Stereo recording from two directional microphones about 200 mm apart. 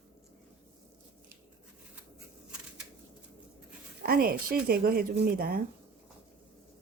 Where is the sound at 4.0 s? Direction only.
50° right (ahead or behind).